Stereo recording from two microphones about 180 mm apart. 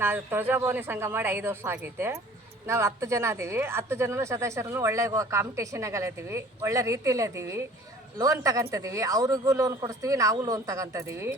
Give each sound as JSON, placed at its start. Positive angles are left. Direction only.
{"t": 0.0, "sound": "speech", "side_deg": -10}